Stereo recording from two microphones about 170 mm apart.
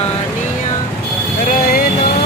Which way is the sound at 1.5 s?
55° left (ahead or behind).